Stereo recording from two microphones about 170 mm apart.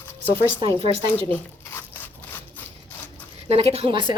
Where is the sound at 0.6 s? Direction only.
30° right (ahead or behind).